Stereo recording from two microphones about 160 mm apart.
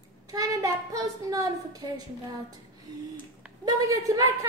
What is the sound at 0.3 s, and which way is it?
A woman's voice, 25° right (ahead or behind).